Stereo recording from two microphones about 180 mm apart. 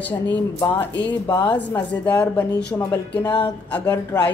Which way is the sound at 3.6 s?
10° left (ahead or behind).